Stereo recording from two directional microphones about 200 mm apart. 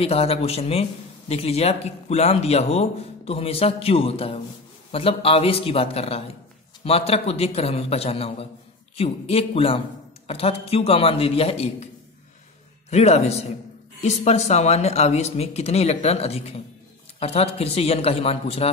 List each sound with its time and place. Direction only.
0.0 s a man's voice: 30° left (ahead or behind)
12.9 s a man's voice: 35° left (ahead or behind)